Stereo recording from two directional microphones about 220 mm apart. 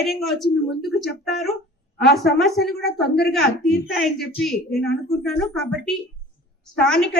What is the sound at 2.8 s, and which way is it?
Speech, 45° left (ahead or behind).